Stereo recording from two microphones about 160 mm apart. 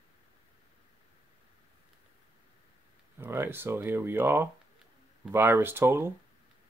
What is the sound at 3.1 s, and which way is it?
Speech, 15° right (ahead or behind).